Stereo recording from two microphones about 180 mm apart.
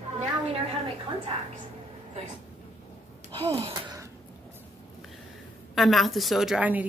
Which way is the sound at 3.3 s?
30° right (ahead or behind).